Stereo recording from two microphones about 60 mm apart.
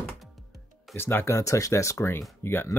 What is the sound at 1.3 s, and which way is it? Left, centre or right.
Speech, left.